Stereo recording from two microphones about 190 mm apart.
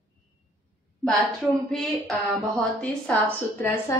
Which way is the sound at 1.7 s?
Centre (ahead or behind).